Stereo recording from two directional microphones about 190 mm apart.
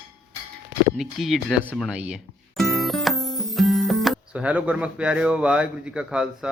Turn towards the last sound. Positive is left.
turn(degrees=-5)  # may be behind; listen again after turning